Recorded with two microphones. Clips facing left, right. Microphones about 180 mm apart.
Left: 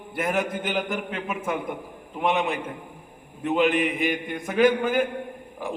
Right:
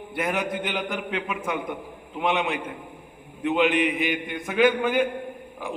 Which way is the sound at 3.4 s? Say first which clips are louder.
Even; 40° left (ahead or behind).